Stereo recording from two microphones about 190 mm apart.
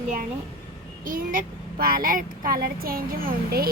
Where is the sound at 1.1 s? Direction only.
45° right (ahead or behind).